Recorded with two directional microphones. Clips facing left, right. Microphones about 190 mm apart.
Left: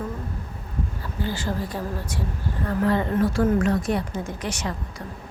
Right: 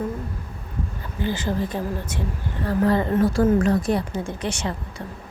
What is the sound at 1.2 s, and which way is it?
A woman's voice, 20° right (ahead or behind).